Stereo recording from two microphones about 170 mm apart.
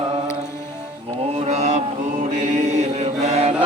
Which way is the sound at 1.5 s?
40° right (ahead or behind).